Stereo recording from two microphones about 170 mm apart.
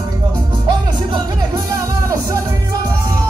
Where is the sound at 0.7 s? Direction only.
25° right (ahead or behind).